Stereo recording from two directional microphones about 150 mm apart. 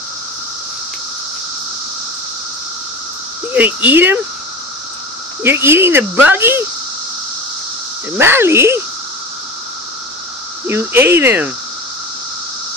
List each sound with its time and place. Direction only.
3.5 s speech: 10° right (ahead or behind)
5.4 s speech: 15° right (ahead or behind)
8.2 s speech: 15° right (ahead or behind)
10.7 s speech: 15° right (ahead or behind)